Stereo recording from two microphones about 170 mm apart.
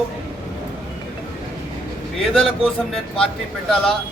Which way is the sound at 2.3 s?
5° left (ahead or behind).